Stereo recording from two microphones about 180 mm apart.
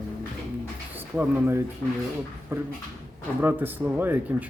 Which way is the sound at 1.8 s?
15° left (ahead or behind).